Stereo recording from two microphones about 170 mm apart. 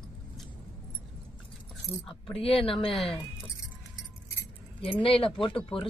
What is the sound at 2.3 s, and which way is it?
Speech, 35° left (ahead or behind).